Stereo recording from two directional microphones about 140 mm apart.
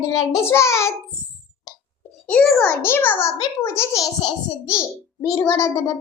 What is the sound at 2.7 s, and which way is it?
A child's voice, 15° left (ahead or behind).